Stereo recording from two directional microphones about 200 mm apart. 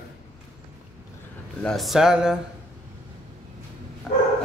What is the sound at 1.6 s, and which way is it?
Speech, centre (ahead or behind).